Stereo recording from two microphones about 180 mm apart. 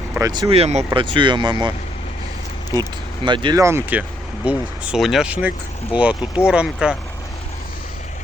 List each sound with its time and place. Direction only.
0.2 s speech: 20° right (ahead or behind)
0.5 s speech: 35° right (ahead or behind)
3.2 s speech: 25° right (ahead or behind); by 6.9 s 5° right (ahead or behind)